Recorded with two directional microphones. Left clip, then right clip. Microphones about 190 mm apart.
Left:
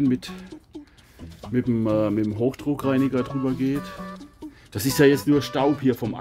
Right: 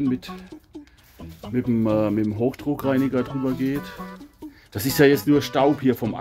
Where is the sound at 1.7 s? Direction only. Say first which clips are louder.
Right 1 dB; centre (ahead or behind).